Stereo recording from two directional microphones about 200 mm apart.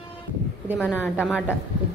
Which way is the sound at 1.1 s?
5° right (ahead or behind).